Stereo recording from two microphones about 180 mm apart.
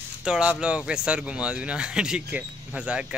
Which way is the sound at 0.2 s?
5° right (ahead or behind).